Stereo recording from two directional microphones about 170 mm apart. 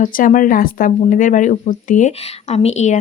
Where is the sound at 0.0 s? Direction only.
50° left (ahead or behind).